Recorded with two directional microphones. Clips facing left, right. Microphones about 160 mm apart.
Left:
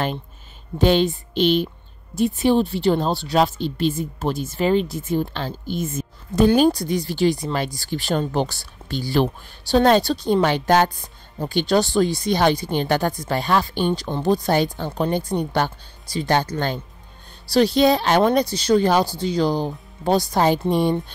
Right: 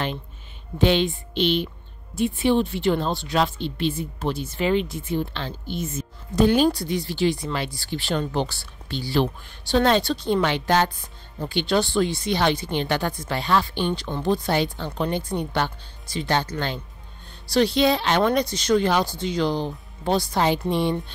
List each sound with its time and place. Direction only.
0.7 s speech: 40° left (ahead or behind)